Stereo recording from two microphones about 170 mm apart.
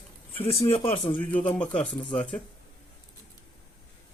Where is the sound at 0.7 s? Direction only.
30° left (ahead or behind).